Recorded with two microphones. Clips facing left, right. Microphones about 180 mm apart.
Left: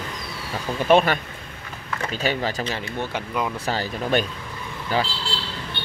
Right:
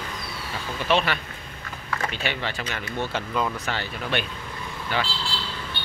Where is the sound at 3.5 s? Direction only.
35° left (ahead or behind).